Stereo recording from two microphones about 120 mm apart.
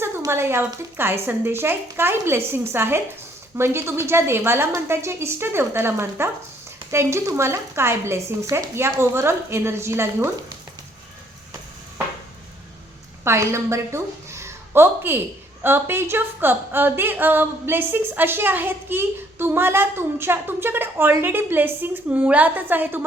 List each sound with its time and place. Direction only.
0.3 s speech: 20° right (ahead or behind)
13.2 s a woman's voice: 20° right (ahead or behind)